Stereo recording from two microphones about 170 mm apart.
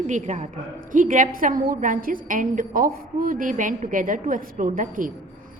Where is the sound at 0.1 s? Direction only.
45° right (ahead or behind).